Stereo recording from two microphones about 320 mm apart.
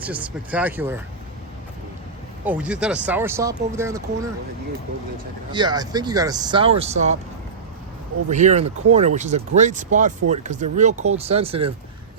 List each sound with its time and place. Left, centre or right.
0.0 s speech: centre
2.4 s speech: centre
5.5 s speech: centre
8.3 s speech: right